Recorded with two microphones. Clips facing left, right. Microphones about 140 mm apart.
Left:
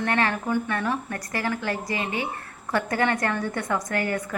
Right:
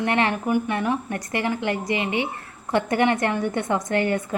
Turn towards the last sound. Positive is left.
turn(degrees=-25)  # may be behind; listen again after turning